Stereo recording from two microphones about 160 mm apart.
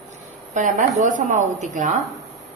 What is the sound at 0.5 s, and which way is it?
A woman's voice, 50° right (ahead or behind).